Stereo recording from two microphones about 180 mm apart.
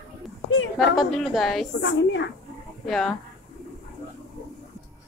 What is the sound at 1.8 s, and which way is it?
Speech, 80° left.